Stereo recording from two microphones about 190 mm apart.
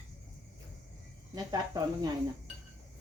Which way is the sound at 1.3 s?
20° right (ahead or behind).